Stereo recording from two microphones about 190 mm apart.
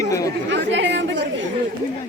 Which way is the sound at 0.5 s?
70° right (ahead or behind).